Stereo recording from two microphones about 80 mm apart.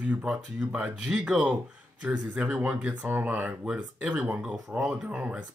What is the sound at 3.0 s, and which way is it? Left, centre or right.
Speech, right.